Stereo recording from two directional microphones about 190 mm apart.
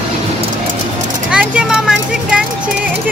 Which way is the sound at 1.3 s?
5° right (ahead or behind).